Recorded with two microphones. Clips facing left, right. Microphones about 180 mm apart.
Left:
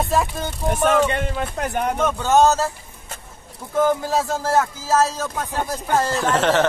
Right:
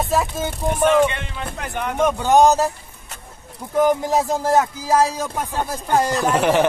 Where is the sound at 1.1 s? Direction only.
45° left (ahead or behind).